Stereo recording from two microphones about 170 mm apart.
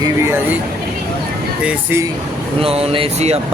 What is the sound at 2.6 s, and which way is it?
Speech, 35° right (ahead or behind).